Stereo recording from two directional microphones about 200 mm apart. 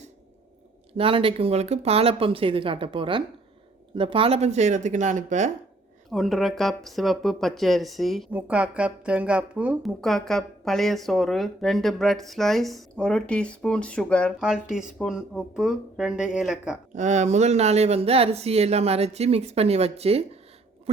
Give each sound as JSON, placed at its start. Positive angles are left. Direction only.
{"t": 0.9, "sound": "speech", "side_deg": -25}
{"t": 6.1, "sound": "speech", "side_deg": 0}
{"t": 16.9, "sound": "speech", "side_deg": -35}